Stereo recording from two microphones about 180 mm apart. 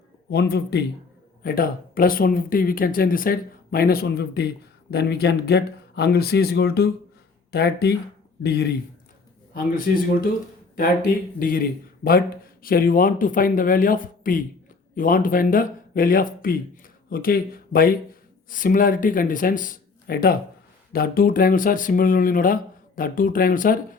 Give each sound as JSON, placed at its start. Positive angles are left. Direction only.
{"t": 0.3, "sound": "speech", "side_deg": 65}
{"t": 9.6, "sound": "speech", "side_deg": 50}
{"t": 11.3, "sound": "speech", "side_deg": 50}
{"t": 12.6, "sound": "speech", "side_deg": 55}